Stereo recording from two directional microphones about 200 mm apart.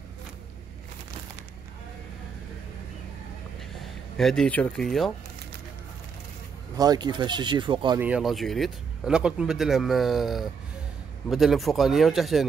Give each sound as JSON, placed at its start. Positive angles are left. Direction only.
{"t": 4.2, "sound": "speech", "side_deg": 0}
{"t": 6.8, "sound": "speech", "side_deg": -20}
{"t": 8.0, "sound": "speech", "side_deg": -5}